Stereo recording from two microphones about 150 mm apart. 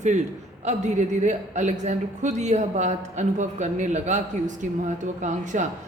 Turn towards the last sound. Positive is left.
turn(degrees=-55)  # may be behind; listen again after turning